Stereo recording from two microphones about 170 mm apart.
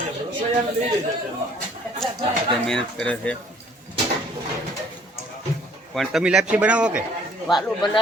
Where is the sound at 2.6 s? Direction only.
5° left (ahead or behind).